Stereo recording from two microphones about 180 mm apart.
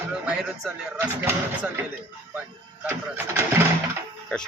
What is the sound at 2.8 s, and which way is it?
Speech, 15° right (ahead or behind).